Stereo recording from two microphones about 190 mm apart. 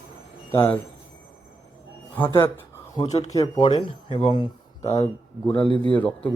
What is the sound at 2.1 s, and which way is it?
Speech, 10° left (ahead or behind).